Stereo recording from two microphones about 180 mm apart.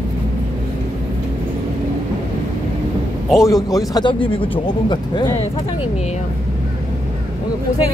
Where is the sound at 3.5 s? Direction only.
20° left (ahead or behind).